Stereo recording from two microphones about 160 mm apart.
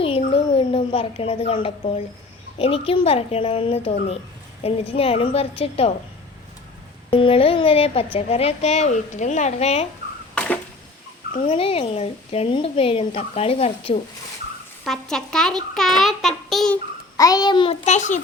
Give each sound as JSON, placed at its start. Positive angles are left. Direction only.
{"t": 0.3, "sound": "a sound", "side_deg": 35}
{"t": 2.6, "sound": "a woman's voice", "side_deg": 35}
{"t": 7.1, "sound": "a woman's voice", "side_deg": 35}
{"t": 10.3, "sound": "arrow", "side_deg": 5}
{"t": 11.4, "sound": "a woman's voice", "side_deg": 35}
{"t": 14.8, "sound": "a child's voice", "side_deg": 5}
{"t": 17.2, "sound": "a child's voice", "side_deg": 25}
{"t": 17.8, "sound": "a child's voice", "side_deg": 50}